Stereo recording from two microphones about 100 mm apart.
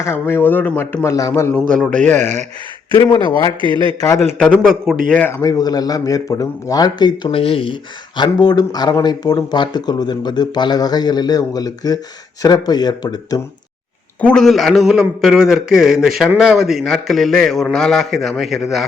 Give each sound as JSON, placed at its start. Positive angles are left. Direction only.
{"t": 0.0, "sound": "speech", "side_deg": 25}
{"t": 1.0, "sound": "a man's voice", "side_deg": 35}
{"t": 1.5, "sound": "a man's voice", "side_deg": 10}
{"t": 2.9, "sound": "speech", "side_deg": 50}
{"t": 3.6, "sound": "a man's voice", "side_deg": -55}
{"t": 4.0, "sound": "a man's voice", "side_deg": 35}
{"t": 4.6, "sound": "a man's voice", "side_deg": 5}
{"t": 5.3, "sound": "a man's voice", "side_deg": 35}
{"t": 7.3, "sound": "speech", "side_deg": 70}
{"t": 14.2, "sound": "a man's voice", "side_deg": 10}